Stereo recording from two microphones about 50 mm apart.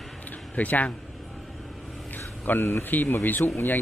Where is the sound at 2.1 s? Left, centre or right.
Left.